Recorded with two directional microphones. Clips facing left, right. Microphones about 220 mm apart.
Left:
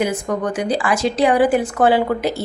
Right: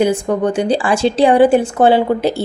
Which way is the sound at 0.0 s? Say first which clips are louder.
Right 6 dB; 30° right (ahead or behind).